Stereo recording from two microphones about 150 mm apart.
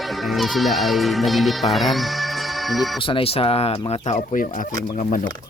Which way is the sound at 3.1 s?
35° left (ahead or behind).